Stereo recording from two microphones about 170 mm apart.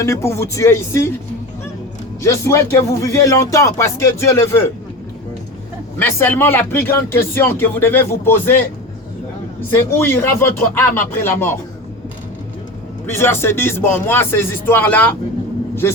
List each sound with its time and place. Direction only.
0.0 s speech: 15° left (ahead or behind)
2.2 s speech: 15° left (ahead or behind)
6.0 s speech: 15° left (ahead or behind)
9.6 s speech: 15° left (ahead or behind)
13.1 s speech: 15° left (ahead or behind)